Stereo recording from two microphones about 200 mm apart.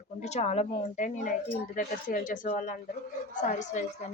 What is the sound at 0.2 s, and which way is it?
A woman's voice, 35° left (ahead or behind).